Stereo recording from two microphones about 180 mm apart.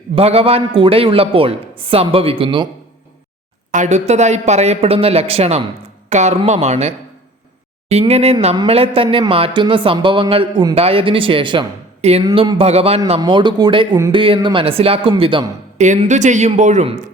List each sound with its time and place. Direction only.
0.2 s speech: 35° right (ahead or behind)
3.7 s speech: 40° right (ahead or behind)
15.8 s speech: 40° right (ahead or behind)